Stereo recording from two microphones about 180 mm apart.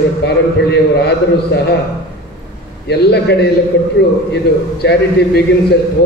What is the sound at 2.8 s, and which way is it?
A man's voice, 70° left (ahead or behind).